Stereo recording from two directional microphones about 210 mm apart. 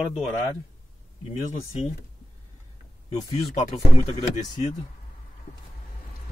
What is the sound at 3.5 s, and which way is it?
Speech, 30° left (ahead or behind).